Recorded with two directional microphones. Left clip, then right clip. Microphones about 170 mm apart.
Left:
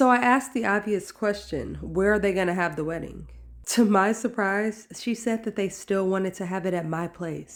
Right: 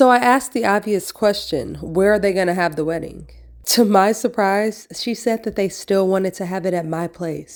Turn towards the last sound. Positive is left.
turn(degrees=-30)  # may be behind; listen again after turning